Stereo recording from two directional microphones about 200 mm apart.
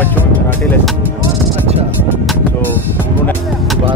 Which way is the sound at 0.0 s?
10° left (ahead or behind).